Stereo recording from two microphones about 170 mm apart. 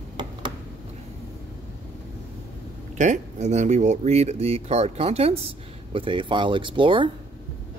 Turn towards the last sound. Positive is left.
turn(degrees=-30)  # may be behind; listen again after turning